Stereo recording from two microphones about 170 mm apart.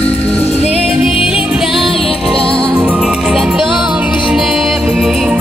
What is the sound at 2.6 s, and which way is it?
Music, 10° right (ahead or behind).